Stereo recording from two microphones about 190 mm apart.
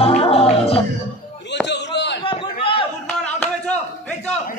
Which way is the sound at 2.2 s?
30° left (ahead or behind).